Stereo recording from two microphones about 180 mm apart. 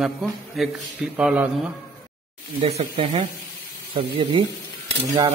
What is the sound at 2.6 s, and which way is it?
Speech, 35° right (ahead or behind).